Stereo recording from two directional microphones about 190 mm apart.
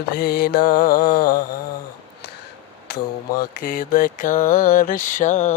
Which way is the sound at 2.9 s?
50° left (ahead or behind).